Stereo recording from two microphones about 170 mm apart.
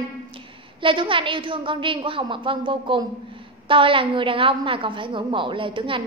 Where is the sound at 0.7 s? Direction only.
30° right (ahead or behind).